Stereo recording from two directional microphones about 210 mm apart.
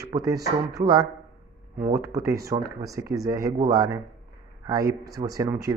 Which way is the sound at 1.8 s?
15° right (ahead or behind).